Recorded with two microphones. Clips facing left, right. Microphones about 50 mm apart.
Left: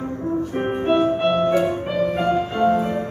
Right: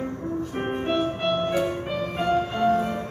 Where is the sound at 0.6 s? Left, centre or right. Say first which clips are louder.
Left 6 dB; centre.